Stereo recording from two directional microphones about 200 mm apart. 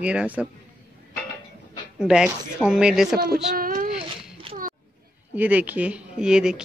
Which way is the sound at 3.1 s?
50° right (ahead or behind).